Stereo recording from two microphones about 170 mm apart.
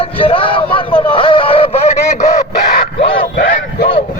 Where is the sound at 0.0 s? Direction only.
30° left (ahead or behind).